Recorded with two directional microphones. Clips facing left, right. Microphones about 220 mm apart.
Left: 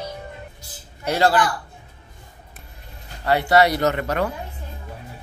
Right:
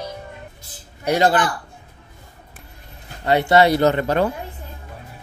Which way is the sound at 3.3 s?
25° right (ahead or behind).